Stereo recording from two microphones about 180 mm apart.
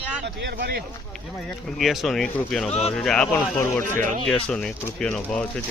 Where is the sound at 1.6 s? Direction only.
Centre (ahead or behind).